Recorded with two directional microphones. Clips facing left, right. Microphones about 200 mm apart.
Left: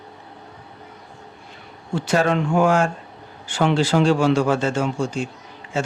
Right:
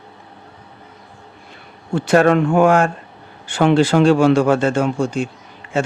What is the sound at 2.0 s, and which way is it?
A man's voice, 60° right (ahead or behind).